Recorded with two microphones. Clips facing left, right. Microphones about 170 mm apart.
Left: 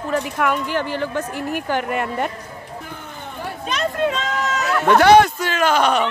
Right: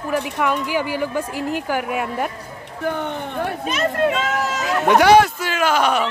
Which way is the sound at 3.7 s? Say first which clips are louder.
Even; 5° right (ahead or behind).